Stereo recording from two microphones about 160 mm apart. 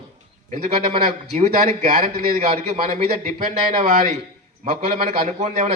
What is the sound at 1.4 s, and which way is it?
Speech, 55° right (ahead or behind).